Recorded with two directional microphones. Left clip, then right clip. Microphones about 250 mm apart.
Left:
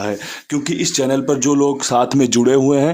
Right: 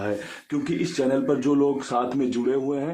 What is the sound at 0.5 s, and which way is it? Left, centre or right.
Speech, left.